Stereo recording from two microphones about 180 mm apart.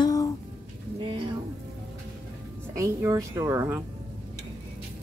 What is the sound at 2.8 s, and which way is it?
Speech, 15° right (ahead or behind).